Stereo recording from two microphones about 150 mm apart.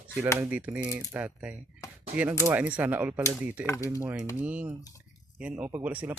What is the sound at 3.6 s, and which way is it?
Speech, 20° left (ahead or behind).